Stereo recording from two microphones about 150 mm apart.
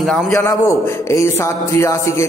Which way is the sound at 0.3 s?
20° left (ahead or behind).